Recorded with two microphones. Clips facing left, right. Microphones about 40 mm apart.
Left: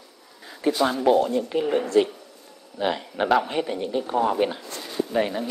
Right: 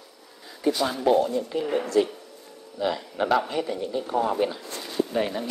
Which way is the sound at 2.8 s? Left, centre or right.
Left.